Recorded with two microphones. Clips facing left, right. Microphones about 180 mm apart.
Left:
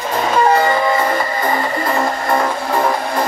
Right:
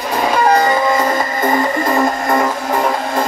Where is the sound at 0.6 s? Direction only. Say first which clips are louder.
Right 1 dB; 20° right (ahead or behind).